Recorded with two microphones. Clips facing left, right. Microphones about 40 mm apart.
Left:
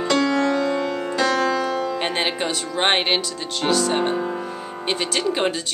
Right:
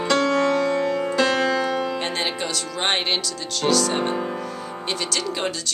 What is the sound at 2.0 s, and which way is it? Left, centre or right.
Speech, left.